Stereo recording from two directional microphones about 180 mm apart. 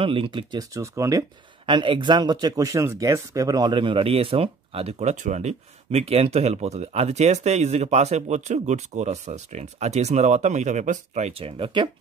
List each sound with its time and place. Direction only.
0.0 s speech: 30° right (ahead or behind)